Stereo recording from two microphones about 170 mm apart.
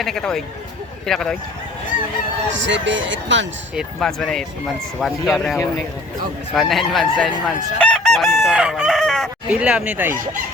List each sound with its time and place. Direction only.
0.0 s speech: 5° left (ahead or behind)
2.5 s speech: 90° right
3.8 s speech: centre (ahead or behind)
7.4 s chicken: 5° left (ahead or behind)